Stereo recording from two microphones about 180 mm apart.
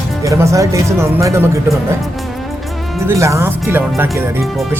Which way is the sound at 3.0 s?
15° right (ahead or behind).